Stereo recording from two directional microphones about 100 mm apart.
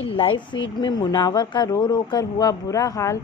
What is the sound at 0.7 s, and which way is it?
A woman's voice, 45° left (ahead or behind).